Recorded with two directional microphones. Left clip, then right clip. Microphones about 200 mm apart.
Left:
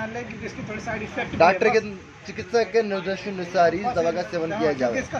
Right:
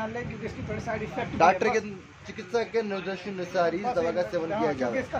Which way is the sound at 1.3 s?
15° left (ahead or behind).